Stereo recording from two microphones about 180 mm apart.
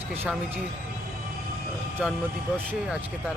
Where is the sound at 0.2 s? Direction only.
10° right (ahead or behind).